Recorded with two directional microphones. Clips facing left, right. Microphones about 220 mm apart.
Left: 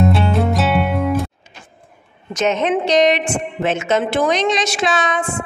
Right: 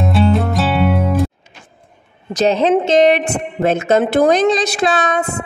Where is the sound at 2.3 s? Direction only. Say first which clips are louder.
Right 4 dB; 35° right (ahead or behind).